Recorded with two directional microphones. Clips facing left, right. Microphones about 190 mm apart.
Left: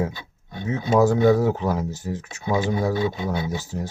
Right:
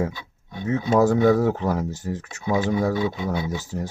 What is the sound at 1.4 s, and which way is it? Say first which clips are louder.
Speech: even; 10° left (ahead or behind).